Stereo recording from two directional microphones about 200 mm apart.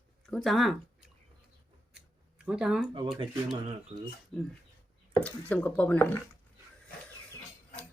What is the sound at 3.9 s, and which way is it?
Speech, 35° right (ahead or behind).